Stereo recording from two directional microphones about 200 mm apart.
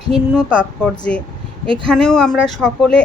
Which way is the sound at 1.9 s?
5° left (ahead or behind).